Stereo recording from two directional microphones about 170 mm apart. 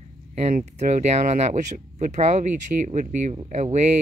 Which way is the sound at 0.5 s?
45° right (ahead or behind).